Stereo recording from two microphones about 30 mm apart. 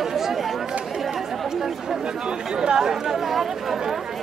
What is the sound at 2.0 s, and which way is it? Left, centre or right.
Chatter, right.